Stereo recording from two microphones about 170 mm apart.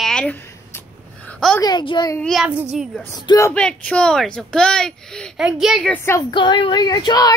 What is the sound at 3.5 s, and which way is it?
Speech, 5° left (ahead or behind).